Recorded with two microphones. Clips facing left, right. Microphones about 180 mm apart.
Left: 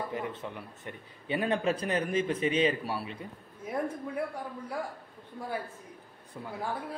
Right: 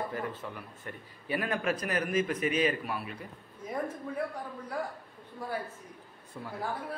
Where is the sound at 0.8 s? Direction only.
25° left (ahead or behind).